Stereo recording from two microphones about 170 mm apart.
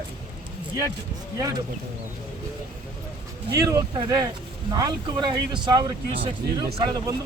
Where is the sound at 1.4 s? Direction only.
20° right (ahead or behind).